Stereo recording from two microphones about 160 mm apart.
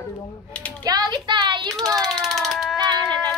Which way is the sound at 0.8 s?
25° right (ahead or behind).